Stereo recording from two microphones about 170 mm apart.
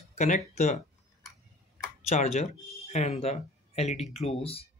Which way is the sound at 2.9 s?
40° left (ahead or behind).